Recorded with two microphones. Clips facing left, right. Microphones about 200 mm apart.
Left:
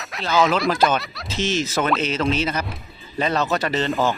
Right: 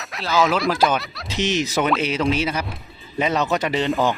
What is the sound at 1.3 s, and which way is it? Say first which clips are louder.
Speech: right 1 dB; 15° right (ahead or behind).